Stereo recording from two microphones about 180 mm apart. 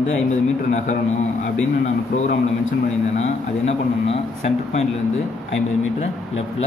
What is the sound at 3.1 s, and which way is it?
Speech, 35° left (ahead or behind).